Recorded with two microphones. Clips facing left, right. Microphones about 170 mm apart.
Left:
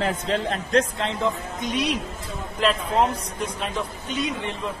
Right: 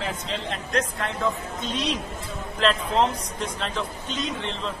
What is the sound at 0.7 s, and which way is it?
A man's voice, 25° left (ahead or behind).